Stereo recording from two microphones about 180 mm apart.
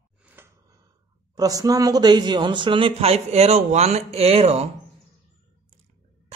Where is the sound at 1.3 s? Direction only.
20° right (ahead or behind).